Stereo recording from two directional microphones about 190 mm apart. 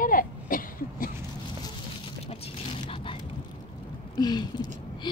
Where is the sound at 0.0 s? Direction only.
45° left (ahead or behind).